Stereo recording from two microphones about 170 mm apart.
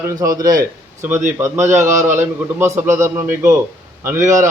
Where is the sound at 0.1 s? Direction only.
20° right (ahead or behind).